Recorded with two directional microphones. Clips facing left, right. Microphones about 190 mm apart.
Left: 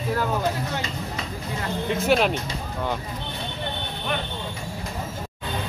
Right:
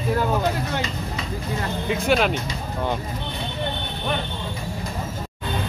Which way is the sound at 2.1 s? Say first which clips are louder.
Even; centre (ahead or behind).